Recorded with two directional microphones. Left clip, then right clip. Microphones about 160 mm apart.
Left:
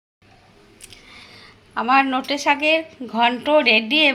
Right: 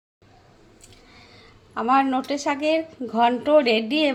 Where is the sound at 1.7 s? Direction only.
20° right (ahead or behind).